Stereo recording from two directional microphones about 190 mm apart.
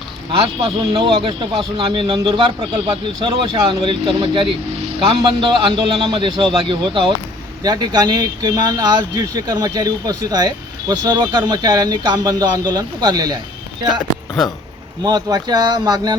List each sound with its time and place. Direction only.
0.3 s speech: 25° right (ahead or behind)
3.2 s speech: 25° right (ahead or behind)
15.0 s speech: 20° right (ahead or behind)